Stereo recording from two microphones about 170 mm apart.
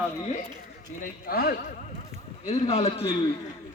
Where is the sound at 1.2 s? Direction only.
65° left (ahead or behind).